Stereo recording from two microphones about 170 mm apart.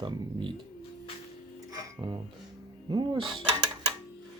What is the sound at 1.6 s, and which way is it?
Music, 25° right (ahead or behind).